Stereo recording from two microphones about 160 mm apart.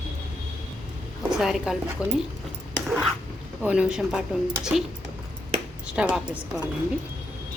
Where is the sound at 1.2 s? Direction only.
5° right (ahead or behind).